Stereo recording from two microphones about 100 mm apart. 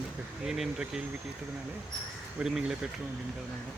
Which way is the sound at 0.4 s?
5° right (ahead or behind).